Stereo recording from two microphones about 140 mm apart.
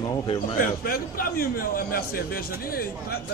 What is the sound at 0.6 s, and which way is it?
A man's voice, 90° left.